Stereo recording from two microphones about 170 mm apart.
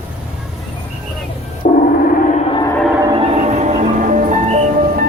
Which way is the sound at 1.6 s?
50° left (ahead or behind).